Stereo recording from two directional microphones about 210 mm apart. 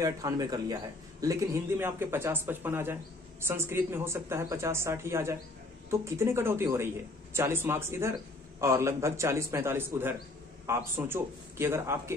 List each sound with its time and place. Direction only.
0.0 s speech: 15° right (ahead or behind)